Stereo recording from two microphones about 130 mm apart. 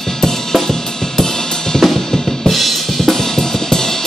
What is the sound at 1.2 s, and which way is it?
Drum kit, 5° left (ahead or behind).